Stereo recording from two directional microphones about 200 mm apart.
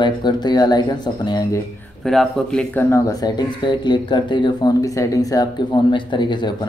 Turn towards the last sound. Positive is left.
turn(degrees=20)  # may be behind; listen again after turning